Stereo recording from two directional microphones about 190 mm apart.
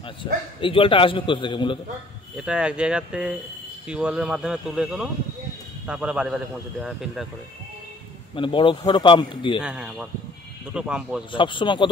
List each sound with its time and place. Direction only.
0.2 s a man's voice: 25° left (ahead or behind)
2.3 s a man's voice: 5° right (ahead or behind)
8.4 s a man's voice: 25° left (ahead or behind)
9.6 s a man's voice: 5° right (ahead or behind)
11.3 s a man's voice: 25° left (ahead or behind)